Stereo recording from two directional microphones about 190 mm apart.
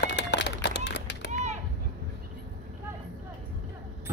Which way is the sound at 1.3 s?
35° right (ahead or behind).